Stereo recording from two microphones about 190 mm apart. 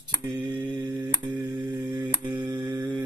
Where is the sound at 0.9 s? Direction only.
25° right (ahead or behind).